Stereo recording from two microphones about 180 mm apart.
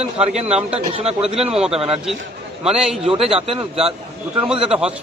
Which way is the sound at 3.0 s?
35° right (ahead or behind).